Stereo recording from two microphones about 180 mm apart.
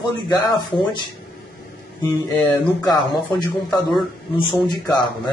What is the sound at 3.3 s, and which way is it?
Speech, 25° left (ahead or behind).